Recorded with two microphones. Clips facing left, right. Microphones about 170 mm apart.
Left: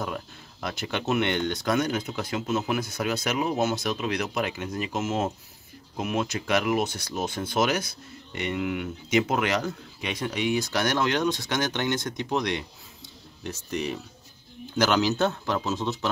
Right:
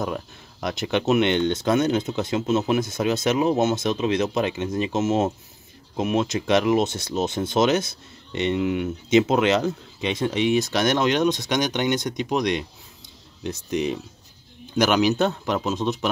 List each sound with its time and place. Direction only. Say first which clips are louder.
0.0 s speech: right 5 dB; 20° right (ahead or behind)